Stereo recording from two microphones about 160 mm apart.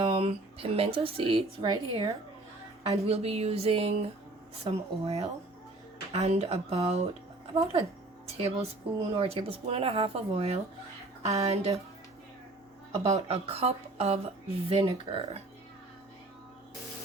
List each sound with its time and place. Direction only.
0.0 s a woman's voice: 35° right (ahead or behind)
3.1 s a woman's voice: 40° right (ahead or behind)
13.0 s a woman's voice: 45° right (ahead or behind)